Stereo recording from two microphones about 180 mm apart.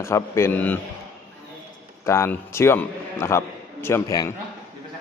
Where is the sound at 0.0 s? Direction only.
15° left (ahead or behind).